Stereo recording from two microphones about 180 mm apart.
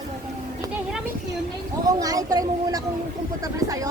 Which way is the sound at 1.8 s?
20° right (ahead or behind).